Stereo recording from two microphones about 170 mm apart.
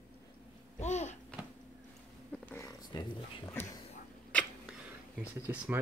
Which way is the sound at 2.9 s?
25° left (ahead or behind).